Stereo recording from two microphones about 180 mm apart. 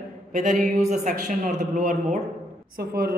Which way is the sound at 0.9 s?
40° right (ahead or behind).